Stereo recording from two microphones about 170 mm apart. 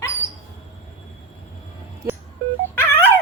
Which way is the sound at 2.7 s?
15° left (ahead or behind).